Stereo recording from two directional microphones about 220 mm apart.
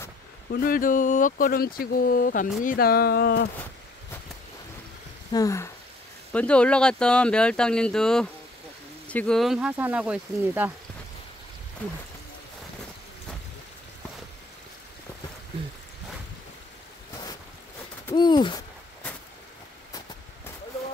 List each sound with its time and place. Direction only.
0.5 s speech: 40° left (ahead or behind)
5.3 s speech: 15° left (ahead or behind); by 10.7 s 5° right (ahead or behind)
18.1 s owl: 20° left (ahead or behind)